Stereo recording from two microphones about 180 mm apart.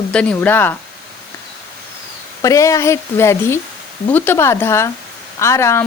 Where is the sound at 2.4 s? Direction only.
15° left (ahead or behind).